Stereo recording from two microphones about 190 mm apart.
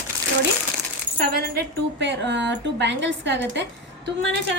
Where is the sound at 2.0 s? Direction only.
70° right (ahead or behind).